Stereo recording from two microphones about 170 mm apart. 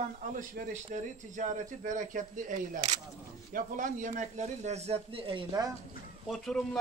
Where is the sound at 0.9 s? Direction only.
50° right (ahead or behind); by 5.7 s 25° right (ahead or behind).